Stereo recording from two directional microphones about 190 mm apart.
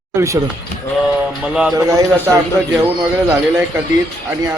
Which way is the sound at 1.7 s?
15° right (ahead or behind).